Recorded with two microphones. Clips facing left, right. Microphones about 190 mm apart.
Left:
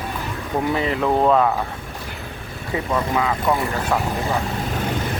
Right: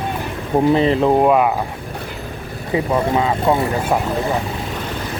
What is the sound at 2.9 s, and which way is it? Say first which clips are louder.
Speech: right 3 dB; 25° right (ahead or behind).